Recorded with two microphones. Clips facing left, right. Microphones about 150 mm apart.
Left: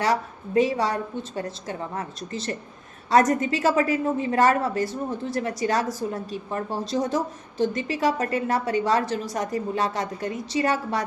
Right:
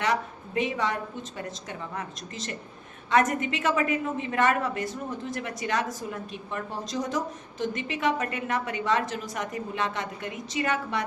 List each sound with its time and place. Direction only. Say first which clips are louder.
0.0 s a woman's voice: left 3 dB; 35° left (ahead or behind)